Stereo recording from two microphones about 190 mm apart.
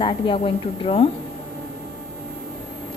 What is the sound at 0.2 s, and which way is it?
Speech, 25° left (ahead or behind).